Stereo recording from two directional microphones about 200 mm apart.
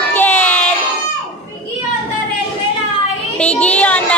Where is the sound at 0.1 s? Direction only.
10° left (ahead or behind).